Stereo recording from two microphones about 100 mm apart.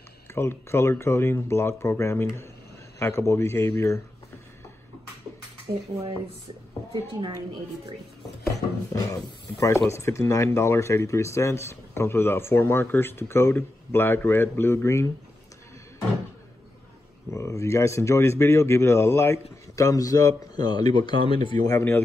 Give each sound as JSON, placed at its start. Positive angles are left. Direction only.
{"t": 0.3, "sound": "speech", "side_deg": 25}
{"t": 6.9, "sound": "a woman's voice", "side_deg": -55}
{"t": 8.9, "sound": "speech", "side_deg": 35}
{"t": 17.3, "sound": "a man's voice", "side_deg": 30}
{"t": 21.6, "sound": "speech", "side_deg": 25}